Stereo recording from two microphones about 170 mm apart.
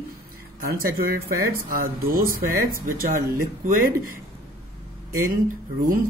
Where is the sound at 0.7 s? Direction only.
60° right (ahead or behind).